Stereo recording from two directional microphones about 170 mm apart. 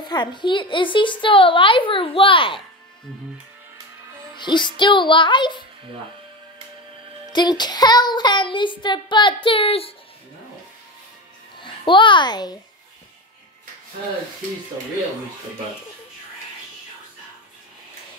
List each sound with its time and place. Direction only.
0.0 s a woman's voice: 25° left (ahead or behind)
4.4 s a woman's voice: 25° left (ahead or behind)
7.3 s a woman's voice: 25° left (ahead or behind)
11.6 s a child's voice: 30° left (ahead or behind)